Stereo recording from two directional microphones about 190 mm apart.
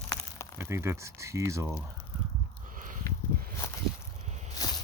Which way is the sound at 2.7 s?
45° right (ahead or behind).